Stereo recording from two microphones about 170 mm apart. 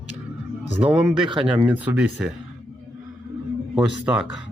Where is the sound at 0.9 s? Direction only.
30° right (ahead or behind).